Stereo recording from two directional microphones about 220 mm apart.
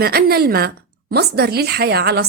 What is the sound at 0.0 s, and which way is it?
A woman's voice, 45° right (ahead or behind).